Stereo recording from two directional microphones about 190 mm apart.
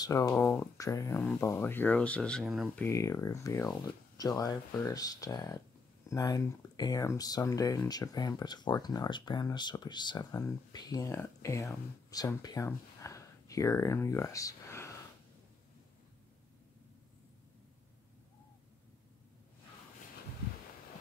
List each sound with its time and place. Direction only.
0.0 s speech: 20° left (ahead or behind)
0.3 s speech: 10° left (ahead or behind)
2.8 s speech: 15° left (ahead or behind)